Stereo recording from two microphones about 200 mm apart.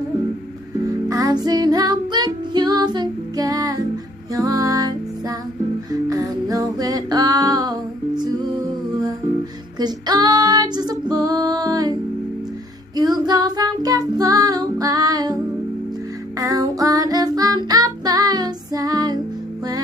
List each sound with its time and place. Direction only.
0.8 s music: 15° right (ahead or behind)
9.8 s female singing: 20° right (ahead or behind)
12.9 s music: 20° right (ahead or behind)
16.3 s music: 15° right (ahead or behind)